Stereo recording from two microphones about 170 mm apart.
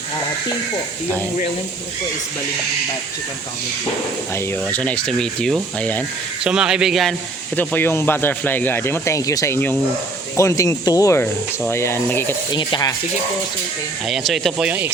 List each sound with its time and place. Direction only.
4.4 s speech: 15° left (ahead or behind)
6.4 s speech: 5° right (ahead or behind); by 12.3 s 15° left (ahead or behind)
12.5 s speech: 30° left (ahead or behind)
14.1 s speech: centre (ahead or behind)